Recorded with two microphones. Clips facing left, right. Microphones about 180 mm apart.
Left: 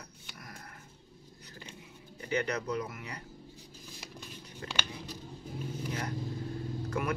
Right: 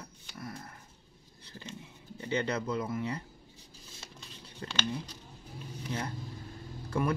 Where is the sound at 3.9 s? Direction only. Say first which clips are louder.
Left 4 dB; 10° left (ahead or behind).